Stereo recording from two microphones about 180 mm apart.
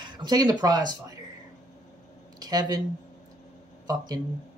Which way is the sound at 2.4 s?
20° right (ahead or behind).